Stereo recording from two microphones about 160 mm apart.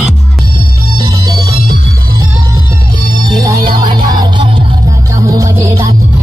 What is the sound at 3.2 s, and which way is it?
Music, 25° right (ahead or behind).